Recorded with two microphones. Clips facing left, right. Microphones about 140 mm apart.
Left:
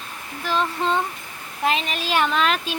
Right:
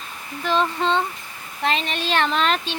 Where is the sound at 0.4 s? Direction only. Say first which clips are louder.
Right 2 dB; 5° left (ahead or behind).